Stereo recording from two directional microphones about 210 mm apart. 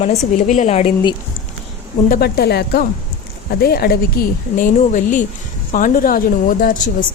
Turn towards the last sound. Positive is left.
turn(degrees=40)  # may be behind; listen again after turning